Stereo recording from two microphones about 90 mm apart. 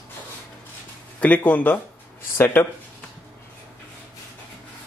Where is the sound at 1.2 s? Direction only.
15° left (ahead or behind).